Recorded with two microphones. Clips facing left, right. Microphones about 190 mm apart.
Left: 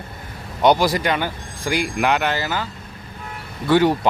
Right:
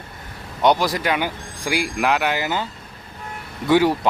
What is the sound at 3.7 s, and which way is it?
Speech, 5° right (ahead or behind).